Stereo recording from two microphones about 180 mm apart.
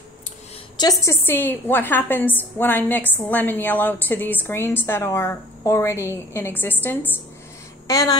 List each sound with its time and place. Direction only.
0.7 s a woman's voice: 20° left (ahead or behind)